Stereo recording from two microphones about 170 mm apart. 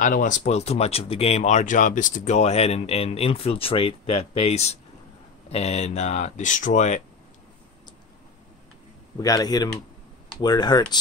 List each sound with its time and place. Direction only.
0.0 s speech: 50° left (ahead or behind)
9.2 s speech: 20° left (ahead or behind)